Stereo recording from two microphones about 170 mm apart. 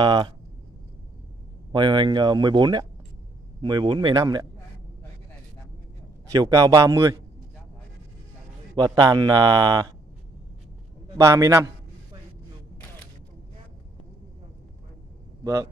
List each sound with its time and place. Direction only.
0.0 s speech: 25° right (ahead or behind)
1.7 s speech: 25° right (ahead or behind)
6.3 s speech: 20° right (ahead or behind)
8.7 s speech: 25° right (ahead or behind)
11.1 s speech: 20° right (ahead or behind)
15.4 s speech: 20° right (ahead or behind)